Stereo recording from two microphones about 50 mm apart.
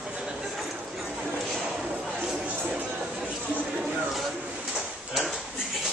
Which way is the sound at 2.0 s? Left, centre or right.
Centre.